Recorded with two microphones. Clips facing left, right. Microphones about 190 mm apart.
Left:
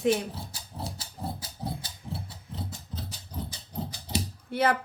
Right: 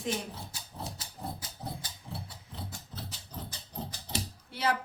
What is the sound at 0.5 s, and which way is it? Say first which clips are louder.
Music: left 3 dB; 30° left (ahead or behind).